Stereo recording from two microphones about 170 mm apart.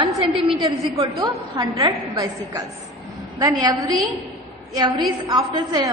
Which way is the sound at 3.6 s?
25° right (ahead or behind).